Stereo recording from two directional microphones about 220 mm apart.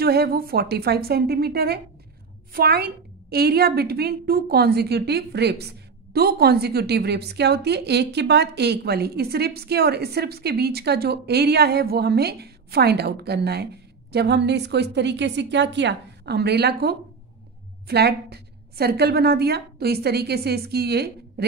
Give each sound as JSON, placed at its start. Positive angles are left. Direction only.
{"t": 0.0, "sound": "a woman's voice", "side_deg": -45}